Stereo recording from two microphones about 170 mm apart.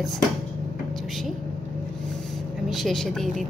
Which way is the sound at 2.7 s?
Centre (ahead or behind).